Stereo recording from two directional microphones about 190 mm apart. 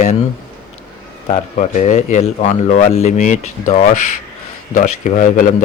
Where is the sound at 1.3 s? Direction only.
40° left (ahead or behind).